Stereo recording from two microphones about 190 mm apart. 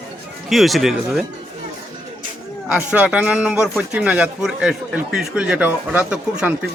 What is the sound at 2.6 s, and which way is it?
A man's voice, 5° right (ahead or behind).